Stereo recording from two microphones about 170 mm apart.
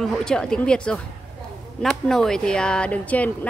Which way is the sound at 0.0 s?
5° left (ahead or behind).